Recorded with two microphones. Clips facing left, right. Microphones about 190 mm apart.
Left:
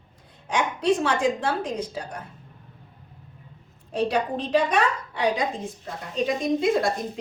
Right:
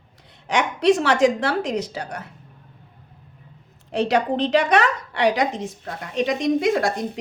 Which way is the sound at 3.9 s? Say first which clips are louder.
Right 4 dB; 80° right.